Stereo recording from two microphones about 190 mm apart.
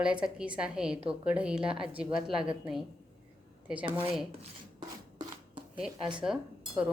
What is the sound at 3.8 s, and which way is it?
Speech, 25° right (ahead or behind).